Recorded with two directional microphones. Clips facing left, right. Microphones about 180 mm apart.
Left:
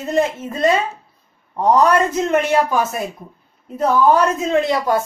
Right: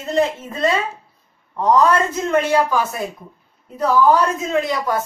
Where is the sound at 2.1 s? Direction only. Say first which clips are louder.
Left 1 dB; 20° left (ahead or behind).